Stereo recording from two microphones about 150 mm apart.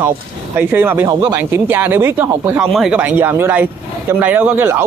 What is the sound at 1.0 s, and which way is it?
Speech, 25° right (ahead or behind).